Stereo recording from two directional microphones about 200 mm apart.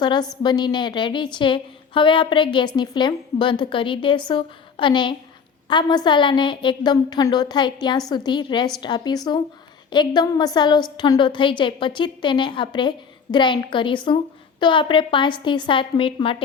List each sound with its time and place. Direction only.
0.0 s a woman's voice: 20° left (ahead or behind)